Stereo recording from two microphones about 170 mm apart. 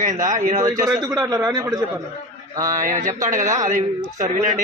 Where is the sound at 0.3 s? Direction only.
50° right (ahead or behind).